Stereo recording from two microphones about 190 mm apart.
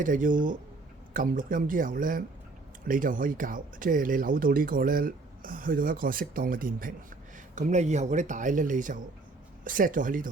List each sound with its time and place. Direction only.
0.0 s speech: 45° right (ahead or behind)